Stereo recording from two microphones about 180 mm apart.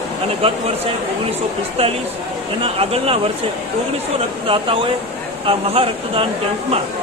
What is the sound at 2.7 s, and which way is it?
Speech, 35° right (ahead or behind).